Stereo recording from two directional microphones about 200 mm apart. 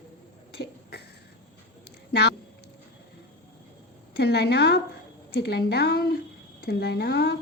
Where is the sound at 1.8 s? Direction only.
55° left (ahead or behind).